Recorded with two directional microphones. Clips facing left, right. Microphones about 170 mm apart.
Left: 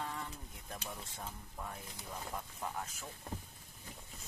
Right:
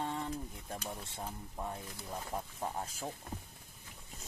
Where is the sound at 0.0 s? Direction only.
30° right (ahead or behind).